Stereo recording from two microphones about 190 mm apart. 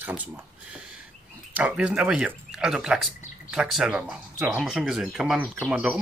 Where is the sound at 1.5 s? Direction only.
5° right (ahead or behind).